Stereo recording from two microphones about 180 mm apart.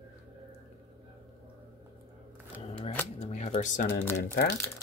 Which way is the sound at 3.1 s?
40° left (ahead or behind).